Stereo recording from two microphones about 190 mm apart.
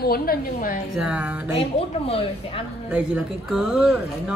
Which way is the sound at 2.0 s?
30° left (ahead or behind).